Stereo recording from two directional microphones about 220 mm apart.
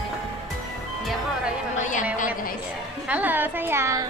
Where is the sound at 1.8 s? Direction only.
35° left (ahead or behind).